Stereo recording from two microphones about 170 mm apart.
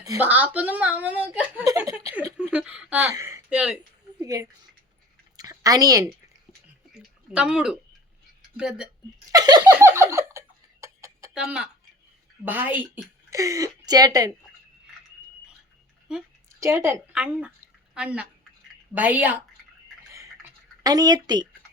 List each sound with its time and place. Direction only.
0.0 s speech: 20° right (ahead or behind)
0.3 s speech: 10° right (ahead or behind)
4.2 s a sound: 20° right (ahead or behind)
6.9 s a sound: 5° right (ahead or behind)
8.5 s speech: 5° right (ahead or behind)
9.3 s speech: 25° right (ahead or behind)
10.1 s a sound: 15° right (ahead or behind)
11.3 s speech: 5° right (ahead or behind); by 14.3 s 20° right (ahead or behind)
16.6 s speech: 15° right (ahead or behind)
20.8 s speech: 20° right (ahead or behind)